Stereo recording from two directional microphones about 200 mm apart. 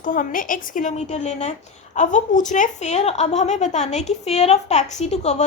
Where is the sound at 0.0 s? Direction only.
40° left (ahead or behind).